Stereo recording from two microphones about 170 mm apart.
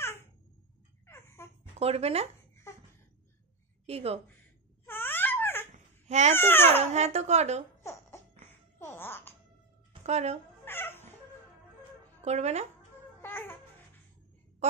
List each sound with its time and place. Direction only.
1.0 s a sound: 15° left (ahead or behind)
1.8 s speech: 35° right (ahead or behind)
3.8 s speech: 35° right (ahead or behind)
4.8 s dog: 10° left (ahead or behind)
6.0 s speech: 40° right (ahead or behind)
6.3 s speech: 15° left (ahead or behind)
6.8 s speech: 40° right (ahead or behind)
7.8 s music: 15° left (ahead or behind)
10.0 s speech: 40° right (ahead or behind)
10.6 s music: 15° left (ahead or behind)
12.3 s speech: 40° right (ahead or behind)
13.2 s babbling: 10° left (ahead or behind)